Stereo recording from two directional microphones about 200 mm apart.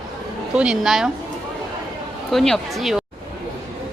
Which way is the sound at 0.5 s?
5° right (ahead or behind).